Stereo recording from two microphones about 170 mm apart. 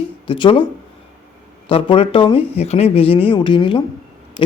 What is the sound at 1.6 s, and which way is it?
A man's voice, 30° left (ahead or behind).